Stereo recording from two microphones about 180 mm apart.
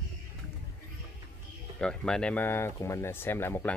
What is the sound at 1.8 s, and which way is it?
Speech, 5° left (ahead or behind).